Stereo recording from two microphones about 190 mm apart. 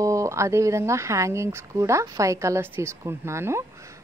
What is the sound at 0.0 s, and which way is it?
Speech, 15° right (ahead or behind).